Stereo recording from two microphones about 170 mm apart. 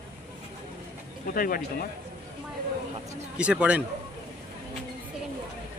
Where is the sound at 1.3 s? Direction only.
55° left (ahead or behind).